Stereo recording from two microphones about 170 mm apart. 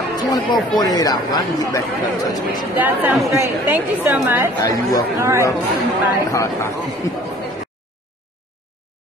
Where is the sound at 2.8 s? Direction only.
10° right (ahead or behind).